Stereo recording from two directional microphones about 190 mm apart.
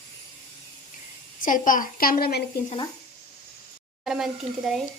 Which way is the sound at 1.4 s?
45° left (ahead or behind).